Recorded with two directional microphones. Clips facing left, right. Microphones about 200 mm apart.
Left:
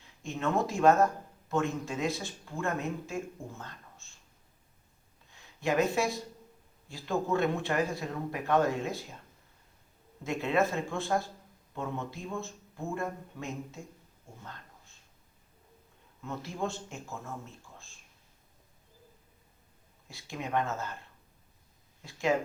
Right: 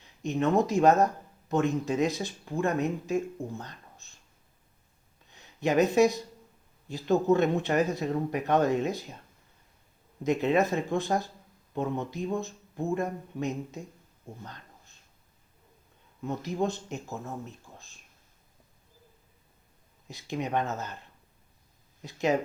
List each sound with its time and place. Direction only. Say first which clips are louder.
0.0 s speech: right 6 dB; 20° right (ahead or behind)
5.3 s speech: right 4 dB; 20° right (ahead or behind)
10.2 s speech: right 4 dB; 20° right (ahead or behind)
16.2 s speech: right 6 dB; 20° right (ahead or behind)
20.1 s speech: right 5 dB; 20° right (ahead or behind)
22.0 s speech: right 2 dB; 20° right (ahead or behind)